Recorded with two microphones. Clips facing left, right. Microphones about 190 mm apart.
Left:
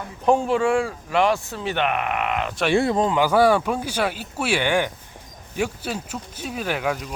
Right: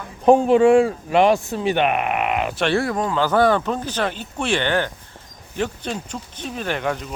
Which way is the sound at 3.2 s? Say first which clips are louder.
Right 1 dB; 10° left (ahead or behind).